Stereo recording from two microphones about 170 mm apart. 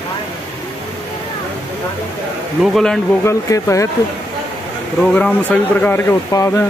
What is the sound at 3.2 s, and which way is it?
Speech, 15° left (ahead or behind).